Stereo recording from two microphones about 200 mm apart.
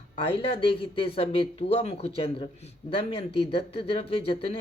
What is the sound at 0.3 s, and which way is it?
Speech, 25° left (ahead or behind).